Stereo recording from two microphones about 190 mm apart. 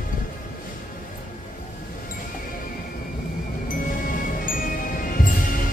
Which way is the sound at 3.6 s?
45° left (ahead or behind).